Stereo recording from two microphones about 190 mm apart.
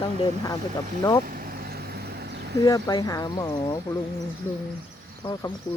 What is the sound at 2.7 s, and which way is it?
Speech, 20° left (ahead or behind).